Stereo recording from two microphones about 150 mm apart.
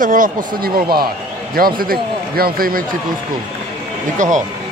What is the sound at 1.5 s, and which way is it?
Speech, 80° right.